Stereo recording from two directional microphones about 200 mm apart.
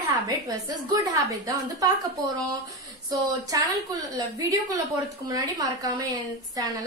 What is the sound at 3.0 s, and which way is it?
Speech, 20° right (ahead or behind).